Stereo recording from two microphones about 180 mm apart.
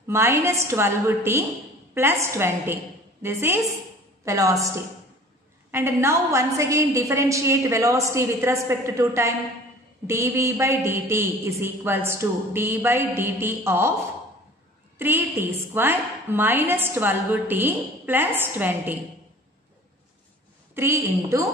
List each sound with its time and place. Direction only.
0.1 s a woman's voice: 15° right (ahead or behind)
15.0 s a woman's voice: 10° right (ahead or behind)
20.7 s a woman's voice: 15° right (ahead or behind)